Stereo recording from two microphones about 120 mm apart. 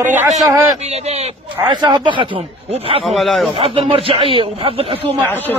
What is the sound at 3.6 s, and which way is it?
Speech, 50° right (ahead or behind).